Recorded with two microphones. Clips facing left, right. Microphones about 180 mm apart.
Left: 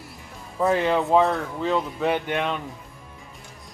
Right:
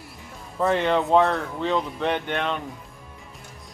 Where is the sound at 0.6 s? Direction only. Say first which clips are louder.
Even; centre (ahead or behind).